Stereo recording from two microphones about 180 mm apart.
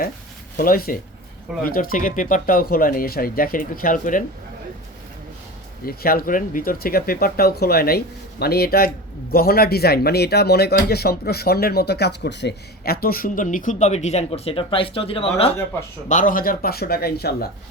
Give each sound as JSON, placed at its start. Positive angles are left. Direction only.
{"t": 0.5, "sound": "speech", "side_deg": 55}
{"t": 5.8, "sound": "speech", "side_deg": 55}
{"t": 16.0, "sound": "speech", "side_deg": 45}